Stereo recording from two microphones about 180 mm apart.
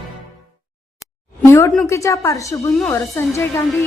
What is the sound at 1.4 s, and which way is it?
A woman's voice, 15° left (ahead or behind).